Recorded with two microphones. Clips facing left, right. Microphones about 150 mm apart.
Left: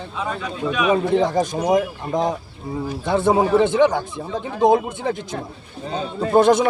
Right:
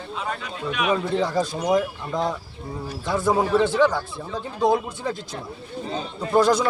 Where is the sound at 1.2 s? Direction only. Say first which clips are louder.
Left 4 dB; 20° left (ahead or behind).